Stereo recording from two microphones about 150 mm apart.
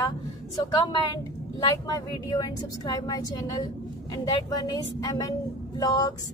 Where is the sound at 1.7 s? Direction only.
25° left (ahead or behind).